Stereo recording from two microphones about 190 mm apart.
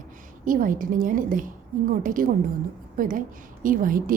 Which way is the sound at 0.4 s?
45° right (ahead or behind).